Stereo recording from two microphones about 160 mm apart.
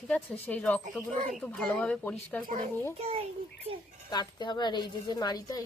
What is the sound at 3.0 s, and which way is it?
Speech, 40° right (ahead or behind).